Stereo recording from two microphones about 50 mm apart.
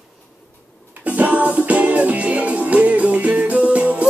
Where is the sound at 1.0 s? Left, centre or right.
Right.